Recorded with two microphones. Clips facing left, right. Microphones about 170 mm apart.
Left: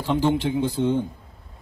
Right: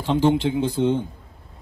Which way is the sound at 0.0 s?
20° right (ahead or behind).